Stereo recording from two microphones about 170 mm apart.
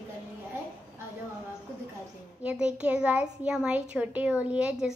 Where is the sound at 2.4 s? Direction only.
5° right (ahead or behind).